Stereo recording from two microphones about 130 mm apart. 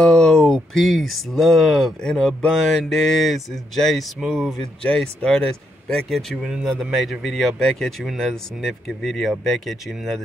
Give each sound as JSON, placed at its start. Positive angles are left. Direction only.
{"t": 0.0, "sound": "speech", "side_deg": 5}